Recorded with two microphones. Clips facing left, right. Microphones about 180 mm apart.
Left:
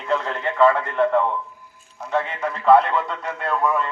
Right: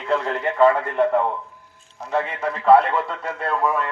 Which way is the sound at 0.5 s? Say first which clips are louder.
Right 1 dB; 15° right (ahead or behind).